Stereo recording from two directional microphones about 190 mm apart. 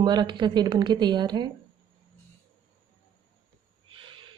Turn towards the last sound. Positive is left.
turn(degrees=-25)  # may be behind; listen again after turning